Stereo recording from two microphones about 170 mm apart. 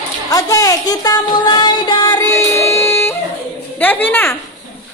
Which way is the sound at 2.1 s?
15° left (ahead or behind).